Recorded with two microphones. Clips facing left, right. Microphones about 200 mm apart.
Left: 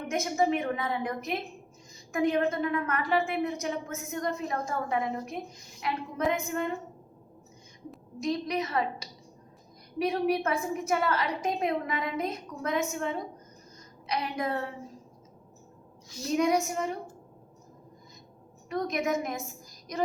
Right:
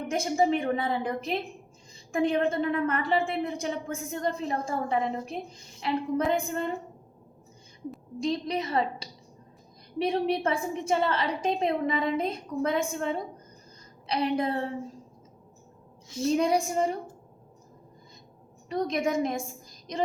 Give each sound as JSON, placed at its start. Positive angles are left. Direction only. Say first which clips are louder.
{"t": 0.1, "sound": "a woman's voice", "louder": "right 2 dB", "side_deg": -30}
{"t": 8.2, "sound": "a woman's voice", "louder": "right 1 dB", "side_deg": -30}
{"t": 16.4, "sound": "a woman's voice", "louder": "left 3 dB", "side_deg": -30}
{"t": 18.7, "sound": "a woman's voice", "louder": "right 2 dB", "side_deg": -30}